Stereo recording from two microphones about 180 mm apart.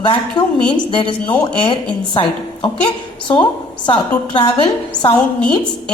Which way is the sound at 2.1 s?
25° left (ahead or behind).